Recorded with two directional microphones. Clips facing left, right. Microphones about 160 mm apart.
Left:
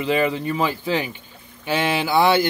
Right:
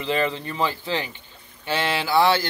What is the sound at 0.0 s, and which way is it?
Speech, 15° left (ahead or behind).